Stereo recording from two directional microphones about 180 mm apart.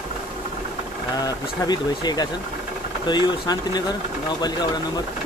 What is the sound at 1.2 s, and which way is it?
Speech, 25° left (ahead or behind).